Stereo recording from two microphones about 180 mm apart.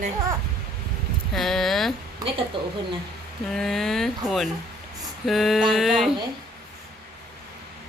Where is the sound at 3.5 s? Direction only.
Centre (ahead or behind).